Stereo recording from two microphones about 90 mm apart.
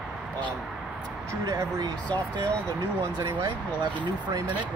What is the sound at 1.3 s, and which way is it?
Speech, 35° right (ahead or behind).